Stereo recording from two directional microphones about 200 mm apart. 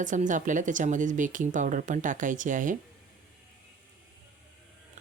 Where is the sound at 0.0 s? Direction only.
40° right (ahead or behind).